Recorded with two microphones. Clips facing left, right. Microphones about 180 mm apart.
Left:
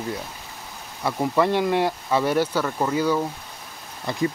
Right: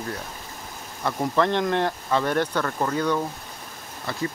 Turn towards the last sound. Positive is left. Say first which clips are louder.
# left 3 dB
turn(degrees=15)  # may be behind; listen again after turning